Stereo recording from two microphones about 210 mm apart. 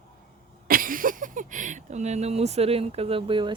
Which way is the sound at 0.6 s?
40° right (ahead or behind).